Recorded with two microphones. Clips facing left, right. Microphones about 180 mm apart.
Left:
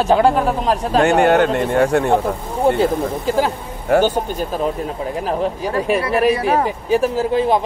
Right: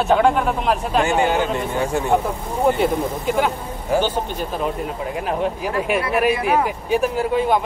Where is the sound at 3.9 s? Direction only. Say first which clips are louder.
Left 5 dB; 65° left (ahead or behind).